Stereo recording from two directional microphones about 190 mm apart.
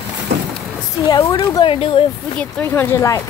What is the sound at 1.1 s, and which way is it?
Speech, 20° left (ahead or behind).